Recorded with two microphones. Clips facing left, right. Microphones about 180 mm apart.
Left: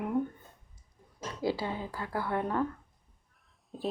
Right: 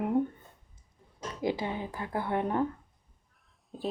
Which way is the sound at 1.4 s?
20° right (ahead or behind).